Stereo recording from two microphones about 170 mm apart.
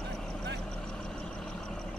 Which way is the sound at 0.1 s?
5° left (ahead or behind).